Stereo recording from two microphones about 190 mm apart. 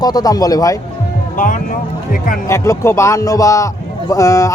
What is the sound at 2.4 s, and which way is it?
Speech, 15° left (ahead or behind).